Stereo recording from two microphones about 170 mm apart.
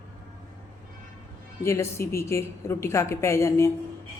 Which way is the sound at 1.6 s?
15° left (ahead or behind).